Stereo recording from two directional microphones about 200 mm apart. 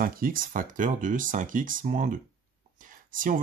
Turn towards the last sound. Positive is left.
turn(degrees=-40)  # may be behind; listen again after turning